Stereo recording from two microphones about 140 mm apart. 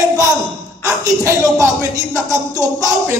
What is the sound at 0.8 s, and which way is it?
Speech, 25° right (ahead or behind).